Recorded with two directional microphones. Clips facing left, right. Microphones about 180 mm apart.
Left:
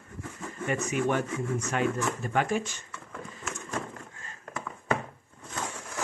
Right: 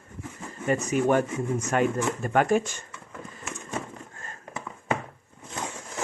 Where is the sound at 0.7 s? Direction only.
40° right (ahead or behind).